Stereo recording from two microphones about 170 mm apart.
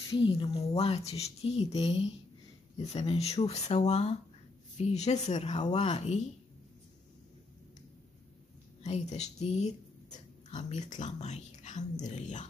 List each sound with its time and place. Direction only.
0.1 s speech: 30° left (ahead or behind)
8.8 s speech: 40° left (ahead or behind)